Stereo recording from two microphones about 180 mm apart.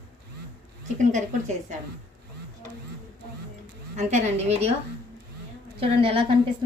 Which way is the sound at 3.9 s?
40° right (ahead or behind).